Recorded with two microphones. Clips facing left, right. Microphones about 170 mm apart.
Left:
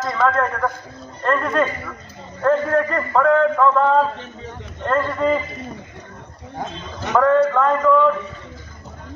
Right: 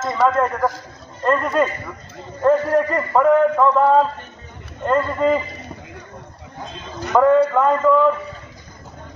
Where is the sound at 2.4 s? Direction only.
10° right (ahead or behind).